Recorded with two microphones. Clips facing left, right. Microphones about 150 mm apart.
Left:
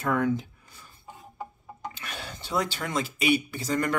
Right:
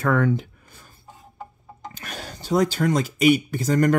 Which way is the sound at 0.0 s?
70° right (ahead or behind).